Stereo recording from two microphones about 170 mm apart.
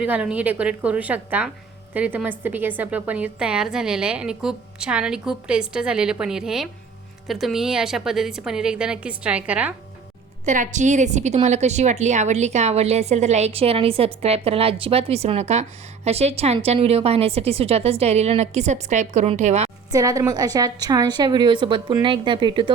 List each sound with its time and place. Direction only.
0.0 s a woman's voice: 10° right (ahead or behind)
10.4 s a woman's voice: 45° right (ahead or behind)
19.9 s a woman's voice: 20° right (ahead or behind)